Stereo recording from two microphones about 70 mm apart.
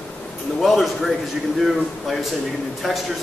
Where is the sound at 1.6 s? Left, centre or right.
Centre.